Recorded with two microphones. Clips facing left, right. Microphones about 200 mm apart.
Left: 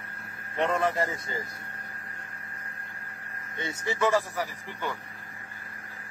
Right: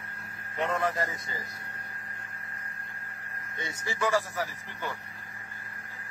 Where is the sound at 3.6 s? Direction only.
25° left (ahead or behind).